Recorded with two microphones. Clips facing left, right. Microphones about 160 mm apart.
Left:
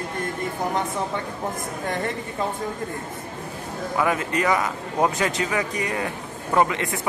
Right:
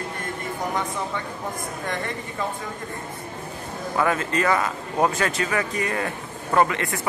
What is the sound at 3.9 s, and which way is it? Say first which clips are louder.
Speech: even; 15° left (ahead or behind).